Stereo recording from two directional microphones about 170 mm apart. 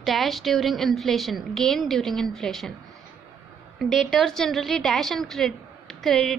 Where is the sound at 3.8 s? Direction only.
Centre (ahead or behind).